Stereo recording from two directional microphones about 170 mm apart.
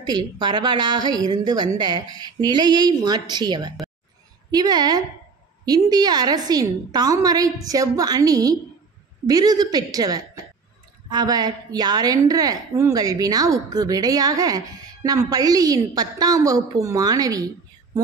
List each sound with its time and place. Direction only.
0.0 s a woman's voice: 25° right (ahead or behind)